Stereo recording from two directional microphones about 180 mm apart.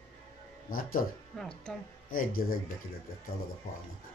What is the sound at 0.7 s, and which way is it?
Speech, 55° left (ahead or behind).